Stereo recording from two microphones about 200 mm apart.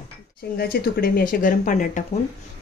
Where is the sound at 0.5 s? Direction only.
50° left (ahead or behind).